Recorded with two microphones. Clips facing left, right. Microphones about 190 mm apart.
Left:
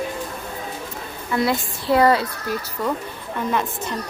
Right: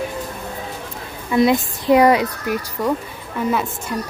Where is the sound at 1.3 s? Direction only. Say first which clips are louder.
Right 6 dB; 20° right (ahead or behind).